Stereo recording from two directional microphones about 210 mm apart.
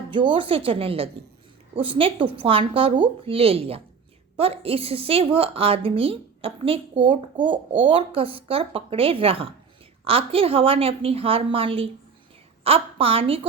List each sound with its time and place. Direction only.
0.1 s a woman's voice: 25° right (ahead or behind)